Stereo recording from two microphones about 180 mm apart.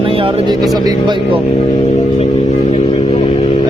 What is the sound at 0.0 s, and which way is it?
Speech, 30° right (ahead or behind).